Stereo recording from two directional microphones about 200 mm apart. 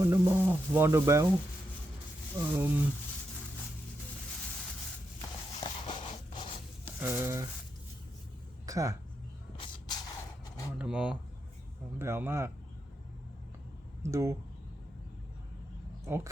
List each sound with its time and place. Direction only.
0.0 s speech: 15° right (ahead or behind)
2.6 s speech: 10° right (ahead or behind)
5.5 s a sound: 20° left (ahead or behind)
7.0 s speech: 10° right (ahead or behind)
8.6 s speech: 15° right (ahead or behind)
9.6 s spray: 20° left (ahead or behind)
10.8 s speech: 5° right (ahead or behind)
14.0 s speech: 15° right (ahead or behind)
16.0 s speech: 10° right (ahead or behind)